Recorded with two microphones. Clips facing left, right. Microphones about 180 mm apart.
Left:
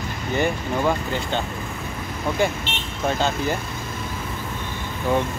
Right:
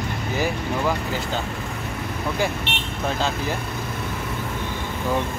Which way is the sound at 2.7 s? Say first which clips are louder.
Right 1 dB; 65° right (ahead or behind).